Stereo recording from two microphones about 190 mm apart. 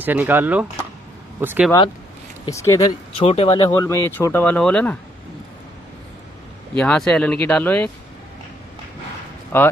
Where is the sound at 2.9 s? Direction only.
30° left (ahead or behind).